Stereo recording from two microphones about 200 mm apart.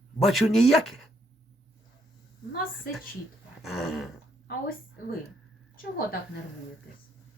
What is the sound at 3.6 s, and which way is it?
Speech, centre (ahead or behind).